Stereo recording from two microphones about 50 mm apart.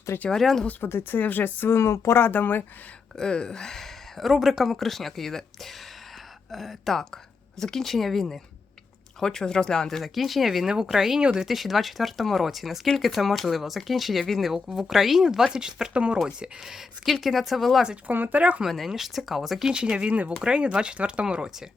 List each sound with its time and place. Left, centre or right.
0.3 s speech: centre
0.8 s speech: left
1.2 s speech: left
1.7 s speech: left
3.2 s speech: centre
4.3 s speech: centre
10.0 s speech: centre
11.2 s speech: right
11.4 s speech: centre
17.1 s speech: centre
18.1 s speech: right
18.6 s speech: centre
19.7 s speech: centre